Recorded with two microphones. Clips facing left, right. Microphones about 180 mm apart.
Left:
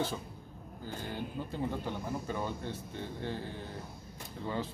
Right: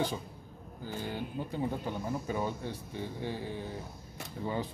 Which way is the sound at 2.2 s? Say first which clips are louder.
Right 2 dB; 10° right (ahead or behind).